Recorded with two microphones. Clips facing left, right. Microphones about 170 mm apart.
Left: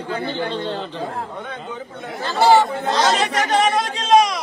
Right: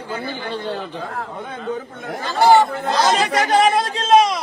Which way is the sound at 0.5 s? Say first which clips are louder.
Left 1 dB; 10° right (ahead or behind).